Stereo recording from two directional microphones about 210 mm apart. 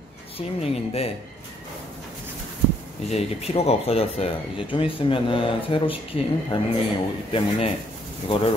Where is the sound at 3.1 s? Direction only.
30° left (ahead or behind).